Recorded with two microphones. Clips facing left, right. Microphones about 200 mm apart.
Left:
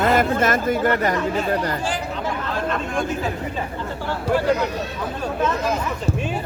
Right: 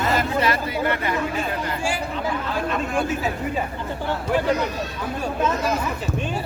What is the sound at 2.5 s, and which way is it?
Speech, 5° right (ahead or behind).